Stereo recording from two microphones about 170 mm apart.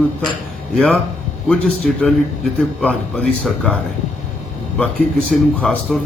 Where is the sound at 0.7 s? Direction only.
5° left (ahead or behind).